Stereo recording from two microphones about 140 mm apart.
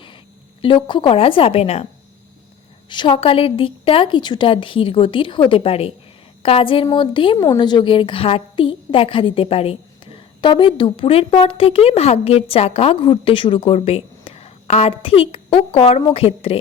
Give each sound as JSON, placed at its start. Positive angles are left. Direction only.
{"t": 0.6, "sound": "a woman's voice", "side_deg": 35}
{"t": 2.9, "sound": "a woman's voice", "side_deg": 35}
{"t": 7.3, "sound": "a woman's voice", "side_deg": 25}